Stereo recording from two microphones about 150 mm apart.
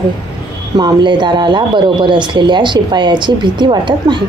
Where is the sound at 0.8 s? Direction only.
30° right (ahead or behind).